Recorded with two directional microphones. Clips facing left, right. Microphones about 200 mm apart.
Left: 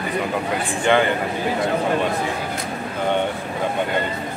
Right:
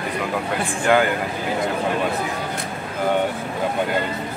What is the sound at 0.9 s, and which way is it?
Speech, 5° right (ahead or behind).